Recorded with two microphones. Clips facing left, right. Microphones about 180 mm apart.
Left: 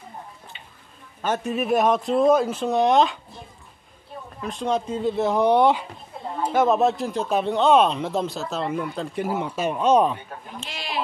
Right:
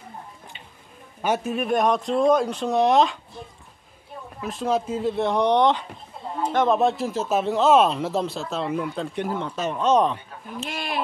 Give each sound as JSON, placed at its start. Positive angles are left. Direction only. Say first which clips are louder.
{"t": 1.4, "sound": "speech", "louder": "left 4 dB", "side_deg": 0}
{"t": 4.4, "sound": "speech", "louder": "right 1 dB", "side_deg": -5}
{"t": 10.7, "sound": "a sound", "louder": "right 3 dB", "side_deg": -55}